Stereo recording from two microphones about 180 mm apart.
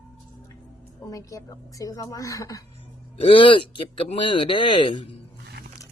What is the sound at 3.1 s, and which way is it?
Speech, 30° left (ahead or behind).